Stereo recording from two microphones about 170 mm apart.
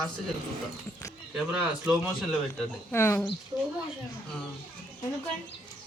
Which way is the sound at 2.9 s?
15° left (ahead or behind).